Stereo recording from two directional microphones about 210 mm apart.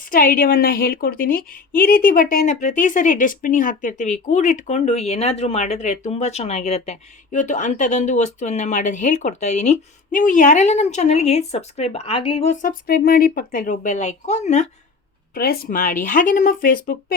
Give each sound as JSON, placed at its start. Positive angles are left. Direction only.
{"t": 0.1, "sound": "a woman's voice", "side_deg": 40}
{"t": 12.9, "sound": "a woman's voice", "side_deg": 45}
{"t": 15.4, "sound": "a woman's voice", "side_deg": 45}